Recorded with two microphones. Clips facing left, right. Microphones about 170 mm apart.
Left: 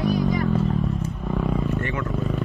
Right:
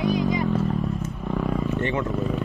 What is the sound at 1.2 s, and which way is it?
Wild animals, centre (ahead or behind).